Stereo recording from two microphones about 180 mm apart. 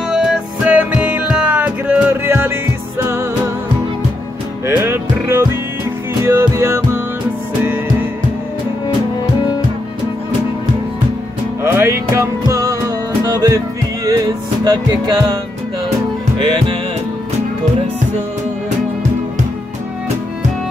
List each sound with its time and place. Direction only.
0.1 s music: 5° right (ahead or behind)
4.6 s music: 15° right (ahead or behind)
11.6 s music: 15° right (ahead or behind)